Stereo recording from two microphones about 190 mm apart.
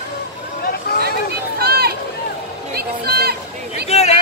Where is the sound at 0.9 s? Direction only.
55° left (ahead or behind).